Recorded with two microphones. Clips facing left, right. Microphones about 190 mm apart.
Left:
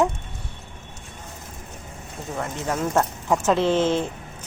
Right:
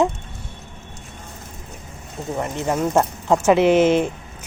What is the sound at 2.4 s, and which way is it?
Speech, 20° right (ahead or behind).